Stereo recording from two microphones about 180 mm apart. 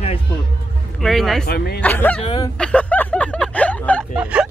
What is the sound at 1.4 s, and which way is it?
Speech, 60° left (ahead or behind).